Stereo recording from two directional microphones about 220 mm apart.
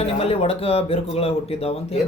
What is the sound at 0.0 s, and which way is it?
Speech, 25° left (ahead or behind).